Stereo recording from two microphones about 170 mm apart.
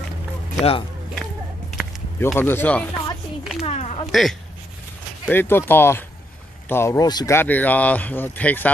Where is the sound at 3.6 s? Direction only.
40° left (ahead or behind).